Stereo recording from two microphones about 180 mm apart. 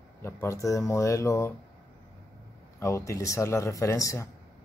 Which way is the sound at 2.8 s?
15° left (ahead or behind).